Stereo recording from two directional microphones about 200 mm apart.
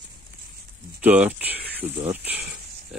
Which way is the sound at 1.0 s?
5° right (ahead or behind).